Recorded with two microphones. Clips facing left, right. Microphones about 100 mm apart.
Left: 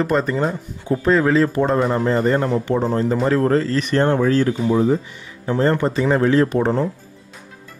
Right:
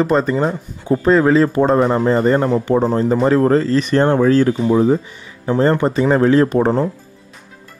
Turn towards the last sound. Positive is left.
turn(degrees=-40)  # may be behind; listen again after turning